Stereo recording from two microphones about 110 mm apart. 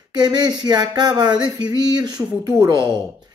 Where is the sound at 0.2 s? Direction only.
40° right (ahead or behind).